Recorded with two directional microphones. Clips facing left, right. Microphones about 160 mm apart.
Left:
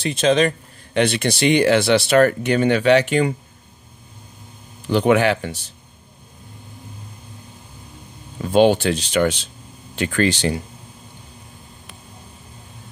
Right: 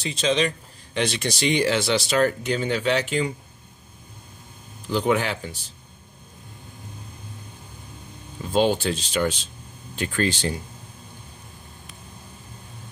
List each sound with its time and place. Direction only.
0.0 s speech: 55° left (ahead or behind)
4.8 s speech: 75° left (ahead or behind)
8.5 s speech: 70° left (ahead or behind)